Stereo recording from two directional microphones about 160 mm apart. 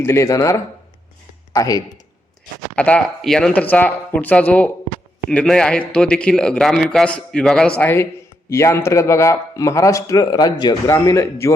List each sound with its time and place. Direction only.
0.0 s speech: 15° left (ahead or behind)
2.7 s a man's voice: 5° left (ahead or behind)